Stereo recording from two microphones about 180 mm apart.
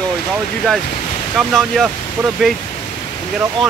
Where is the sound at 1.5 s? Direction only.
Centre (ahead or behind).